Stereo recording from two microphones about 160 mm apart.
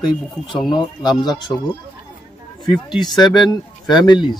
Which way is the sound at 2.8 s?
25° left (ahead or behind).